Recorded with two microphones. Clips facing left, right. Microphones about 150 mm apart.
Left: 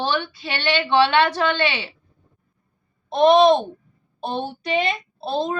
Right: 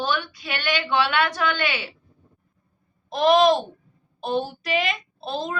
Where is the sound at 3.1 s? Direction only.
30° left (ahead or behind).